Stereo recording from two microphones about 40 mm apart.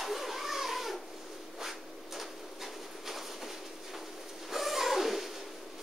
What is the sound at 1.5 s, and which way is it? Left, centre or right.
Printer, centre.